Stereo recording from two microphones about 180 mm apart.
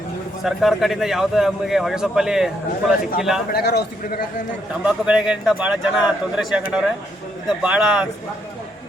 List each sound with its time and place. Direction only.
0.4 s a man's voice: centre (ahead or behind)
3.5 s a man's voice: 60° left (ahead or behind)
4.7 s a man's voice: 5° right (ahead or behind)